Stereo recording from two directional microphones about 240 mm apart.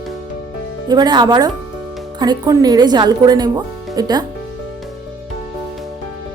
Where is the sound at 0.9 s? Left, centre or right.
Centre.